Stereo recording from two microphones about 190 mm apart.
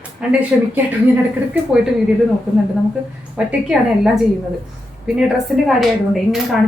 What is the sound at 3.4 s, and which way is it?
Speech, 5° right (ahead or behind).